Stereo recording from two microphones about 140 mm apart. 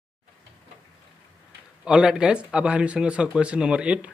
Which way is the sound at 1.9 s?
5° right (ahead or behind).